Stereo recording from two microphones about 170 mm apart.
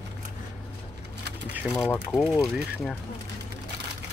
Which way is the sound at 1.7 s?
5° left (ahead or behind).